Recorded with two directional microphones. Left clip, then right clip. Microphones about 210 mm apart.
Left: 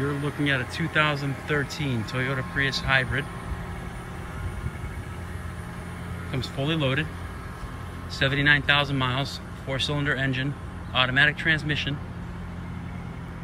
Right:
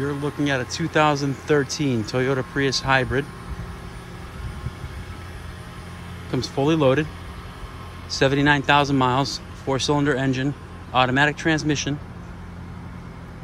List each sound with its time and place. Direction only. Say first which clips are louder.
0.0 s speech: right 2 dB; 10° right (ahead or behind)
6.7 s speech: right 7 dB; 15° right (ahead or behind)
8.1 s speech: right 3 dB; 15° right (ahead or behind)